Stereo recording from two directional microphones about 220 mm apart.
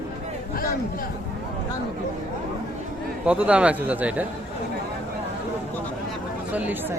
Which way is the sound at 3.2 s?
5° right (ahead or behind).